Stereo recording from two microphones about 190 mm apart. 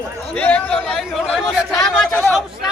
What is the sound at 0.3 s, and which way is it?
Chatter, 5° left (ahead or behind).